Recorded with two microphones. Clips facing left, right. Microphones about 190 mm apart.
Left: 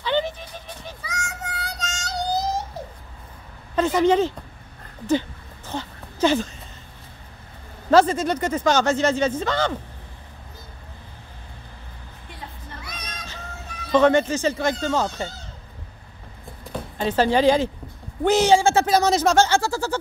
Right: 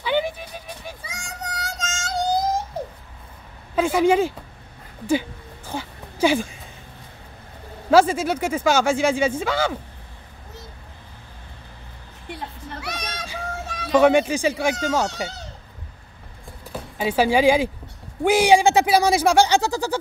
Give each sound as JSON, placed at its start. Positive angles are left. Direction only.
{"t": 0.0, "sound": "music", "side_deg": -10}
{"t": 1.0, "sound": "child singing", "side_deg": -30}
{"t": 3.7, "sound": "speech", "side_deg": -10}
{"t": 5.7, "sound": "a sound", "side_deg": -10}
{"t": 7.9, "sound": "speech", "side_deg": -10}
{"t": 12.3, "sound": "a sound", "side_deg": -75}
{"t": 13.4, "sound": "music", "side_deg": -90}
{"t": 13.9, "sound": "speech", "side_deg": -10}
{"t": 16.7, "sound": "speech", "side_deg": -10}